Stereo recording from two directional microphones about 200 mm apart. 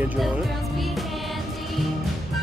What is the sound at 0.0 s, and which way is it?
Music, 10° right (ahead or behind).